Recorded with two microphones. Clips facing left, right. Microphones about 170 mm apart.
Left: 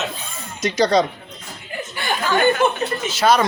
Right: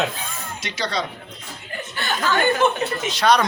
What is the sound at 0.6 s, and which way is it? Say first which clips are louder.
Speech: left 10 dB; 45° left (ahead or behind).